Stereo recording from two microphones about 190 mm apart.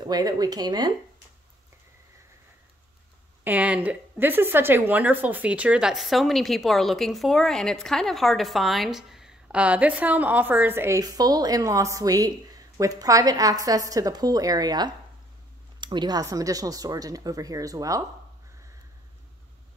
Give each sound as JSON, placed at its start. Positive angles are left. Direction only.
{"t": 0.0, "sound": "speech", "side_deg": -20}
{"t": 3.4, "sound": "a woman's voice", "side_deg": -10}